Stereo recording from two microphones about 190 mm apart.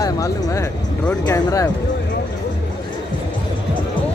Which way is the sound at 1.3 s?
20° left (ahead or behind).